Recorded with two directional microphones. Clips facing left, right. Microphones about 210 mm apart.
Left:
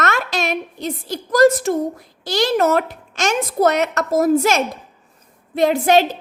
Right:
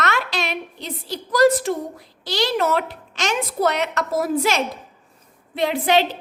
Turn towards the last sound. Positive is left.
turn(degrees=45)  # may be behind; listen again after turning